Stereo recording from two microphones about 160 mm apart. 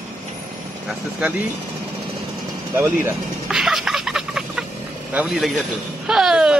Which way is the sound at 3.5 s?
5° right (ahead or behind).